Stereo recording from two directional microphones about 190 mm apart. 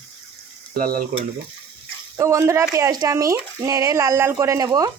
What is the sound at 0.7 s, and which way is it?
Frying, 50° right (ahead or behind).